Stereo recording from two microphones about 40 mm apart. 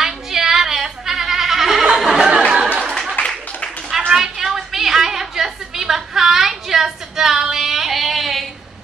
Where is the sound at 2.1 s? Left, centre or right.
Right.